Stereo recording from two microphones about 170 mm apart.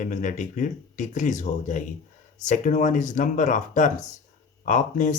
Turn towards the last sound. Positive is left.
turn(degrees=45)  # may be behind; listen again after turning